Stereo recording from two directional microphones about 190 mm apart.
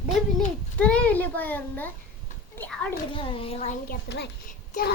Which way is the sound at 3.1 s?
25° left (ahead or behind).